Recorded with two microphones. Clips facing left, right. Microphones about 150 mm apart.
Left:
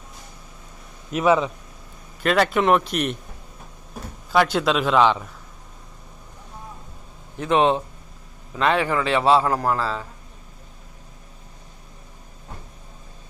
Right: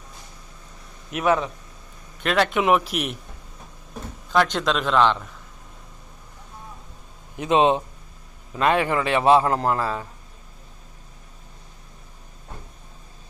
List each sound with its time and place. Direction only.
1.2 s a man's voice: 10° left (ahead or behind)
4.3 s a man's voice: 5° left (ahead or behind)
7.3 s a man's voice: 15° right (ahead or behind)